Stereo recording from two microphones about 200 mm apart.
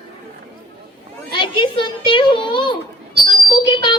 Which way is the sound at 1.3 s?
25° left (ahead or behind).